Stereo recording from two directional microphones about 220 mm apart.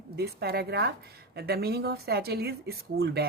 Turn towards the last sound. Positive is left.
turn(degrees=-45)  # may be behind; listen again after turning